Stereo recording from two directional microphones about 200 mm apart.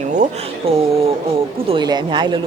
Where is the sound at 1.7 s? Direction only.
20° right (ahead or behind).